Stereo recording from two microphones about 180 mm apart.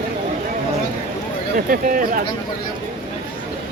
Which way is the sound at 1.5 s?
50° right (ahead or behind).